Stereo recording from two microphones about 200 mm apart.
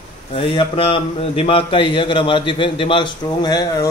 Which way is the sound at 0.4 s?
25° left (ahead or behind).